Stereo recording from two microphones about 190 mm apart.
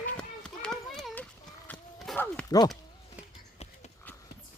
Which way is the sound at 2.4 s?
20° left (ahead or behind).